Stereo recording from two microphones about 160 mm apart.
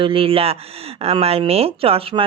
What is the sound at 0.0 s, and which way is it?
Speech, 35° right (ahead or behind).